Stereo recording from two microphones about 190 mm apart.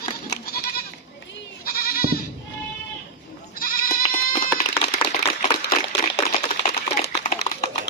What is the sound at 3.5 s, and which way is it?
Goat, 50° left (ahead or behind).